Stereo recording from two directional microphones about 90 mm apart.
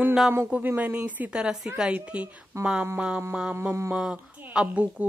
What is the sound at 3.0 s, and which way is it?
A woman's voice, 15° right (ahead or behind).